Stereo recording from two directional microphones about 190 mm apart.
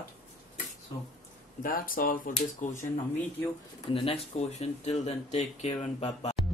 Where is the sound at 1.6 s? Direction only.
50° left (ahead or behind).